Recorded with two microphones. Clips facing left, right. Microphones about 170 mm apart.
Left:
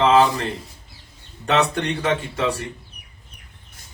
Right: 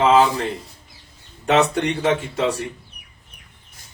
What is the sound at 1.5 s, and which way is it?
Speech, 10° right (ahead or behind).